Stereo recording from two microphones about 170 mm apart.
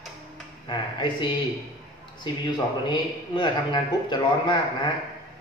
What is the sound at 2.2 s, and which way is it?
Speech, 25° left (ahead or behind).